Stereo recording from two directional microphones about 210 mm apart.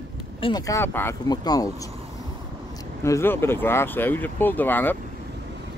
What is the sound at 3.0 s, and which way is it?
Speech, 10° left (ahead or behind).